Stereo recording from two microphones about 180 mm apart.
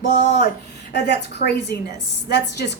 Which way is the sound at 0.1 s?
70° left (ahead or behind).